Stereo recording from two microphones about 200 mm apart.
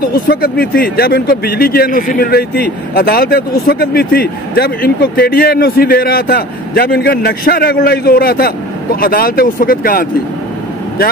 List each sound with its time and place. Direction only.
0.0 s speech: 45° left (ahead or behind)